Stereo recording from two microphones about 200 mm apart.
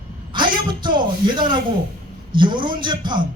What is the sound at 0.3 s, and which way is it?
A man's voice, 25° right (ahead or behind).